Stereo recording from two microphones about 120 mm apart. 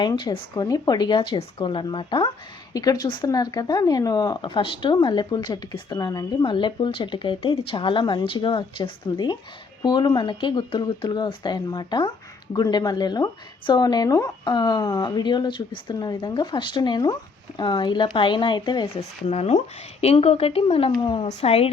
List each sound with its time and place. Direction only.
0.2 s speech: 35° left (ahead or behind)
2.7 s speech: 30° left (ahead or behind)
6.4 s speech: 40° left (ahead or behind)
18.9 s speech: 65° left (ahead or behind); by 21.2 s 45° left (ahead or behind)
21.2 s speech: 55° left (ahead or behind)